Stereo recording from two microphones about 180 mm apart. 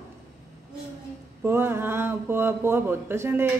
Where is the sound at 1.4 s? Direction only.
10° right (ahead or behind).